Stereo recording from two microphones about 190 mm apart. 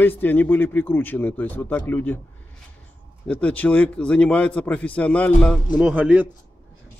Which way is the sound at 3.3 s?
5° left (ahead or behind).